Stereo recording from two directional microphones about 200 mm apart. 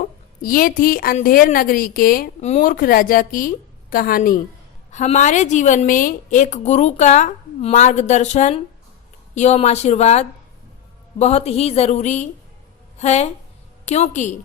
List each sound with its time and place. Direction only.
0.4 s a woman's voice: 45° left (ahead or behind)